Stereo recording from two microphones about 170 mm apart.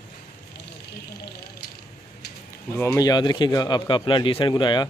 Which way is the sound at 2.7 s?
20° left (ahead or behind).